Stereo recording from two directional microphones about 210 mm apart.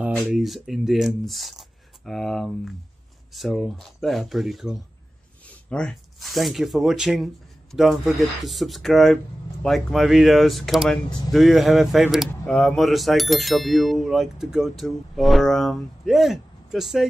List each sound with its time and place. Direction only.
0.1 s speech: centre (ahead or behind)